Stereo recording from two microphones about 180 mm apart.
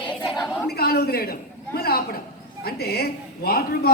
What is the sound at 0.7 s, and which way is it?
A man's voice, 60° left (ahead or behind).